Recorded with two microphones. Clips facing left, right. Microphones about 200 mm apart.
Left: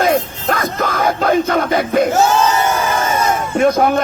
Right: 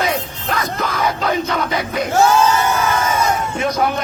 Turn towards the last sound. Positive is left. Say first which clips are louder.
# left 6 dB
turn(degrees=50)  # may be behind; listen again after turning